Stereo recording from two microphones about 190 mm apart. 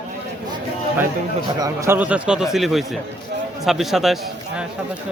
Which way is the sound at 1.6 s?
15° right (ahead or behind).